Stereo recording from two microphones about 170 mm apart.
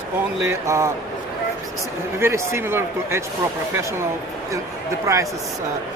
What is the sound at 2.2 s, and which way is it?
Speech, 15° right (ahead or behind).